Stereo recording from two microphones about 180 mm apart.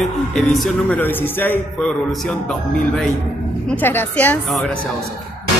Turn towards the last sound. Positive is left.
turn(degrees=10)  # may be behind; listen again after turning